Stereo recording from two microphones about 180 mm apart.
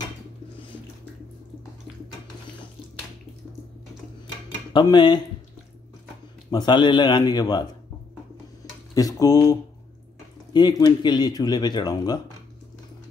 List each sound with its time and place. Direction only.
4.7 s speech: 25° left (ahead or behind)
6.5 s speech: 25° left (ahead or behind)
8.9 s speech: 20° left (ahead or behind)